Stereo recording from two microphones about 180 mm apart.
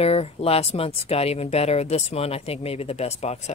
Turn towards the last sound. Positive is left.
turn(degrees=35)  # may be behind; listen again after turning